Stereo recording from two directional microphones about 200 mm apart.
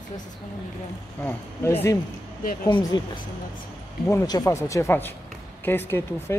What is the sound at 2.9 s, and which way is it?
Speech, 20° left (ahead or behind).